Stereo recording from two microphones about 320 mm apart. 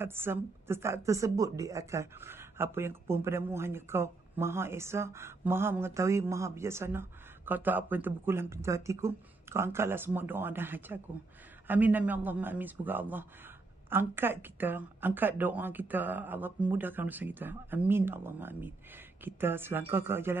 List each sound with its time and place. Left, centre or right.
0.0 s a woman's voice: centre